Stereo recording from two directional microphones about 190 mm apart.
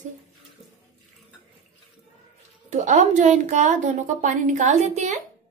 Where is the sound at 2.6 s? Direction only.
40° right (ahead or behind).